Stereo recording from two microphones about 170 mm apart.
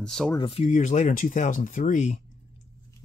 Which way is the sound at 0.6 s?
45° left (ahead or behind).